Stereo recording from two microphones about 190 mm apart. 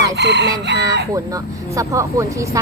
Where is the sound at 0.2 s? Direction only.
65° right (ahead or behind).